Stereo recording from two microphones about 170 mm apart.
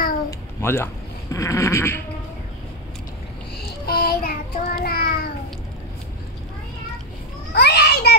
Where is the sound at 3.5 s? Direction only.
70° left (ahead or behind).